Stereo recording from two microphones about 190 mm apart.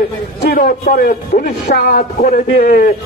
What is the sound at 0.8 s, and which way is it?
A man's voice, 45° left (ahead or behind).